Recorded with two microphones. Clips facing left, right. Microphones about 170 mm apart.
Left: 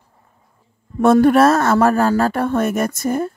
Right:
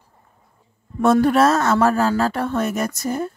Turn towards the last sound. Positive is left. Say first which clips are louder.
# left 4 dB
turn(degrees=50)  # may be behind; listen again after turning